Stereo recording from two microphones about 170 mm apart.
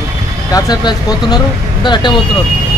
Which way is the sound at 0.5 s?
20° left (ahead or behind).